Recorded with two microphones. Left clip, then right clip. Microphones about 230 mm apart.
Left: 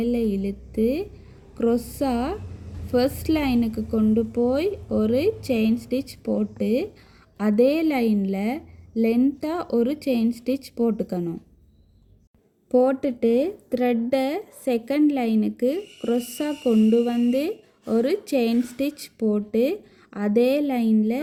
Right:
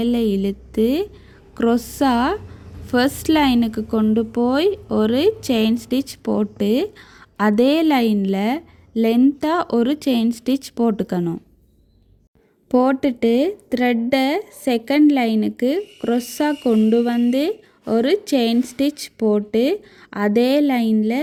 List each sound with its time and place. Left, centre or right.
0.0 s a woman's voice: right
12.7 s speech: right